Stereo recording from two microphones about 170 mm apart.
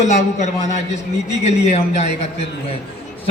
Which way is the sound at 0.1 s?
45° left (ahead or behind).